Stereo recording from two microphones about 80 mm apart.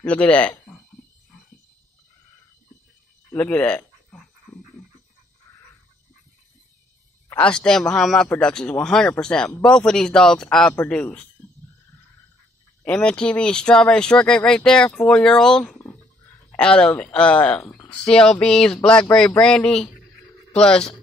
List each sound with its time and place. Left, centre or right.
0.0 s speech: centre
3.3 s speech: centre
7.3 s speech: centre
10.7 s speech: centre
12.8 s speech: centre